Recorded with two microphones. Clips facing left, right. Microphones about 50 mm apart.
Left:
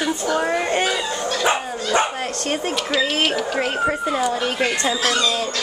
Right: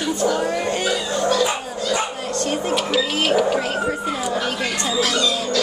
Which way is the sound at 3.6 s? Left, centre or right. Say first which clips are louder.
Left 2 dB; left.